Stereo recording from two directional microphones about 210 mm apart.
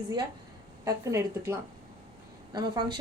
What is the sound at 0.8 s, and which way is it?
Speech, 15° right (ahead or behind).